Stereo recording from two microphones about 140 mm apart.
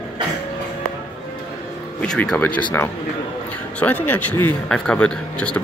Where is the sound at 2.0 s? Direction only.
5° left (ahead or behind).